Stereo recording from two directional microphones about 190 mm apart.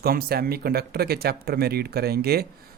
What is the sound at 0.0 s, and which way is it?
Speech, 55° right (ahead or behind).